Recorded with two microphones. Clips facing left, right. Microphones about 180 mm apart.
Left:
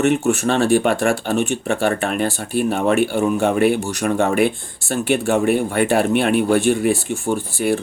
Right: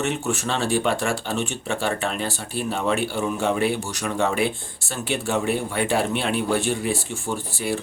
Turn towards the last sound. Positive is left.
turn(degrees=50)  # may be behind; listen again after turning